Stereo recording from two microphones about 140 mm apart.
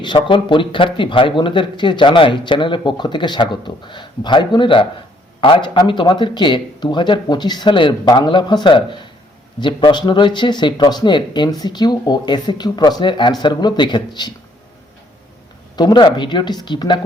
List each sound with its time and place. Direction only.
0.0 s speech: 35° left (ahead or behind)
15.7 s speech: 30° left (ahead or behind)